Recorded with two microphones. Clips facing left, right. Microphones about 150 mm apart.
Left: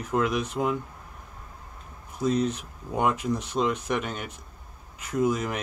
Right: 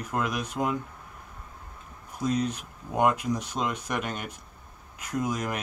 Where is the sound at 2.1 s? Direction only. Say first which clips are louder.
Left 3 dB; 10° right (ahead or behind).